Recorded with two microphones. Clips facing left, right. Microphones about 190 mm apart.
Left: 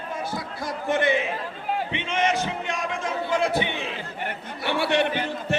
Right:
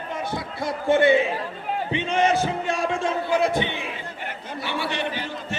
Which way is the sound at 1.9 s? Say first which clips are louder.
Right 5 dB; 35° right (ahead or behind).